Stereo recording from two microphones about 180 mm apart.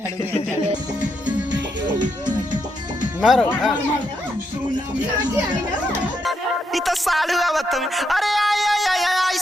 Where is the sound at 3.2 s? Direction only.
Centre (ahead or behind).